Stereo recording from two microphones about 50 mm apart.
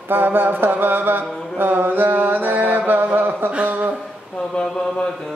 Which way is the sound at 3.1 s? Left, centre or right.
Right.